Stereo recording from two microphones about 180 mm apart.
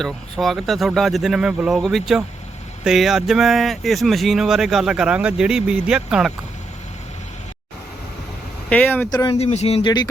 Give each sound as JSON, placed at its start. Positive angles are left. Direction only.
{"t": 0.0, "sound": "speech", "side_deg": 0}
{"t": 8.7, "sound": "speech", "side_deg": 10}
{"t": 9.0, "sound": "speech", "side_deg": 20}
{"t": 9.4, "sound": "speech", "side_deg": 35}